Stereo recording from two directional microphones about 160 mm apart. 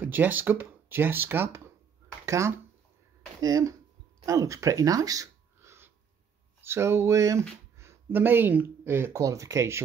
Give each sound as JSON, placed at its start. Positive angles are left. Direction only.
{"t": 0.0, "sound": "speech", "side_deg": -10}